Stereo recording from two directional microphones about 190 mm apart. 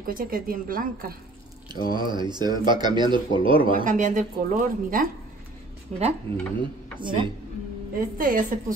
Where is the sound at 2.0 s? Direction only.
25° right (ahead or behind).